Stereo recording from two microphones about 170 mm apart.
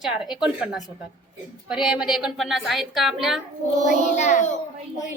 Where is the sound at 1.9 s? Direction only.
5° right (ahead or behind).